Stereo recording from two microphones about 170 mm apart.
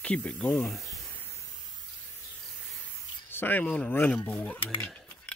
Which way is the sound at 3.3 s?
10° left (ahead or behind).